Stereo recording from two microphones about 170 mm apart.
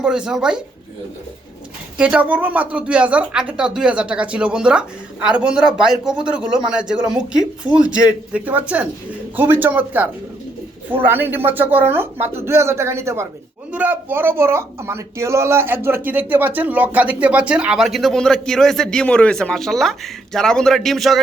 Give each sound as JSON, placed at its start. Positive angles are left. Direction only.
{"t": 0.0, "sound": "speech", "side_deg": -5}
{"t": 2.0, "sound": "speech", "side_deg": -5}